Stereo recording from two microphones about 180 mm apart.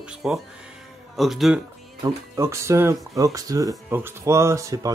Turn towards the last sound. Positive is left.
turn(degrees=-15)  # may be behind; listen again after turning